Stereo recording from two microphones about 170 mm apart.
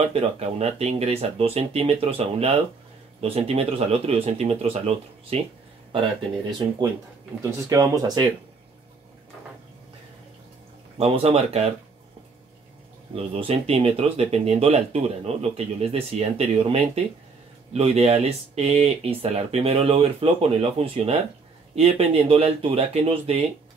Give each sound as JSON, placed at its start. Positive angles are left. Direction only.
{"t": 0.0, "sound": "speech", "side_deg": -35}
{"t": 7.7, "sound": "speech", "side_deg": -20}
{"t": 11.0, "sound": "speech", "side_deg": -35}
{"t": 13.1, "sound": "speech", "side_deg": -35}